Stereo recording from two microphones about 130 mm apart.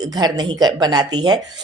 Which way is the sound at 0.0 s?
30° right (ahead or behind).